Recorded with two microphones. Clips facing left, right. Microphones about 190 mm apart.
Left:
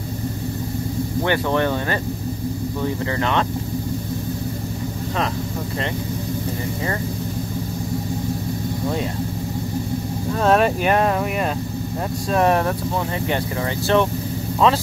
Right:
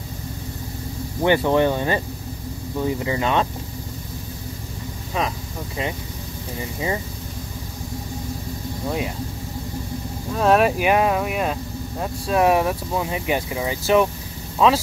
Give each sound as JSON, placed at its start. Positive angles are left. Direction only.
{"t": 1.2, "sound": "speech", "side_deg": -15}
{"t": 10.3, "sound": "speech", "side_deg": 0}